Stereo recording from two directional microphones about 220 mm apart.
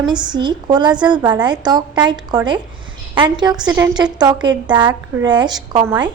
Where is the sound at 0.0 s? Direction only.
20° right (ahead or behind).